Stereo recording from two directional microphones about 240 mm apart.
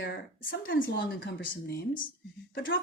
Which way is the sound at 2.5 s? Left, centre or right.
Left.